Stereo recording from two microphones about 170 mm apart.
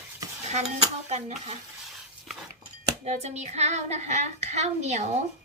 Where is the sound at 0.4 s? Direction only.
40° right (ahead or behind).